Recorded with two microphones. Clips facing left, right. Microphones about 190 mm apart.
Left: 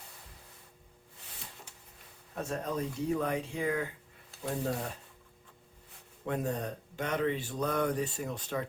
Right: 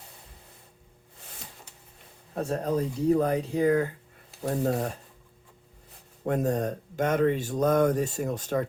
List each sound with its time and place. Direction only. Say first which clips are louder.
2.3 s speech: right 7 dB; 35° right (ahead or behind)
6.2 s speech: right 7 dB; 45° right (ahead or behind)